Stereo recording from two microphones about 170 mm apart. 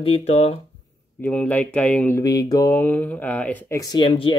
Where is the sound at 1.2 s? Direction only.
10° left (ahead or behind).